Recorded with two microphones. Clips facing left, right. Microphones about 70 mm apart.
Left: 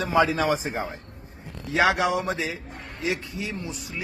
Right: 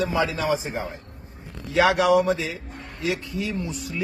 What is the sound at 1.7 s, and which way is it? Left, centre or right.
A man's voice, left.